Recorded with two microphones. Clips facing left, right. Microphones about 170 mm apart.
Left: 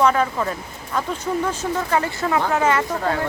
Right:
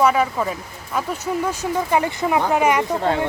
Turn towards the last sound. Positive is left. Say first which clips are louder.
# right 2 dB
turn(degrees=-25)  # may be behind; listen again after turning